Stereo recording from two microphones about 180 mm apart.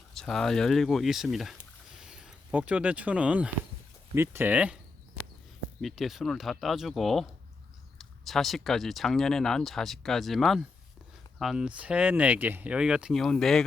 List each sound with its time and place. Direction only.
0.1 s speech: 5° left (ahead or behind)
5.8 s speech: centre (ahead or behind)